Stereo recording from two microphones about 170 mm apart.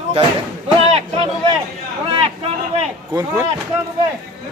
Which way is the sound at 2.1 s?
35° right (ahead or behind).